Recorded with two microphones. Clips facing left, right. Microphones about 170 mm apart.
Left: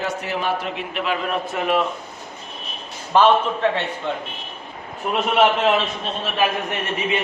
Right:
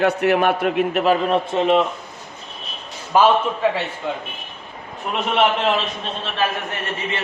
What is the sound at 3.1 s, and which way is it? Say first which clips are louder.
Speech: even; 5° right (ahead or behind).